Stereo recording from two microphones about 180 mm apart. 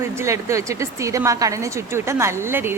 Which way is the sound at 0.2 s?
15° right (ahead or behind).